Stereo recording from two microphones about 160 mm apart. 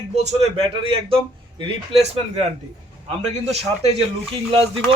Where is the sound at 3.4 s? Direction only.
40° right (ahead or behind).